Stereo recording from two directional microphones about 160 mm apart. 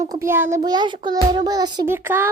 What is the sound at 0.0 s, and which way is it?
A child's voice, 20° right (ahead or behind).